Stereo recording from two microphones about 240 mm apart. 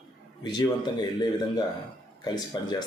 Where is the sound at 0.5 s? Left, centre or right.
Centre.